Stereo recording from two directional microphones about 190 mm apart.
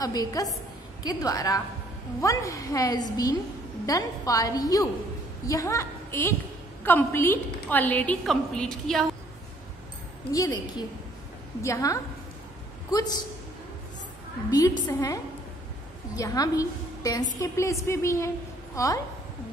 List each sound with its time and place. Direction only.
0.0 s a woman's voice: 20° left (ahead or behind); by 9.0 s centre (ahead or behind)
10.3 s a woman's voice: 20° left (ahead or behind)
11.6 s a woman's voice: 15° left (ahead or behind)
14.5 s a woman's voice: 20° left (ahead or behind)
16.2 s a woman's voice: 20° left (ahead or behind)